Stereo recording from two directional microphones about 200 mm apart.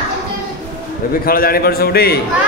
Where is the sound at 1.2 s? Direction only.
50° left (ahead or behind).